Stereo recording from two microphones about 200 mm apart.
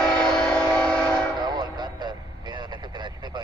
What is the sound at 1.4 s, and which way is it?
Vehicle, 20° right (ahead or behind).